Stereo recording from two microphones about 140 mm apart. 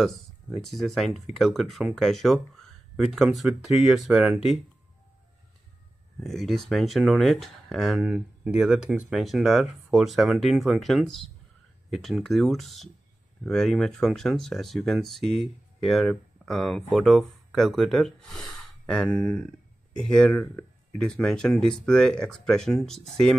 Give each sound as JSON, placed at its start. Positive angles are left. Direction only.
{"t": 0.6, "sound": "speech", "side_deg": 0}
{"t": 6.1, "sound": "speech", "side_deg": 0}